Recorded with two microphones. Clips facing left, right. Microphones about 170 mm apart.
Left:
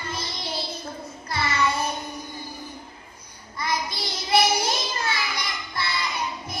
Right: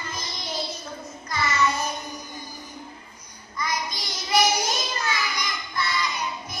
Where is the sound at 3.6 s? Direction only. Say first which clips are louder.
Left 2 dB; 30° left (ahead or behind).